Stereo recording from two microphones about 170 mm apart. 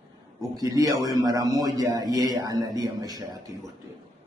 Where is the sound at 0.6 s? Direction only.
20° right (ahead or behind).